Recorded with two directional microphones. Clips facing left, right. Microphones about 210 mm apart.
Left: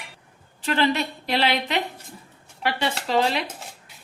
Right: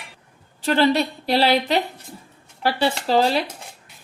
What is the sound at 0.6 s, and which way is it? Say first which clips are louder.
Speech: right 4 dB; 35° right (ahead or behind).